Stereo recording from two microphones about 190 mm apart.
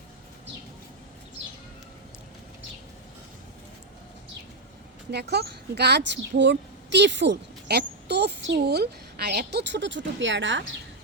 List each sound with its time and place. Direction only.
5.1 s a woman's voice: 60° right (ahead or behind); by 10.8 s 75° right (ahead or behind)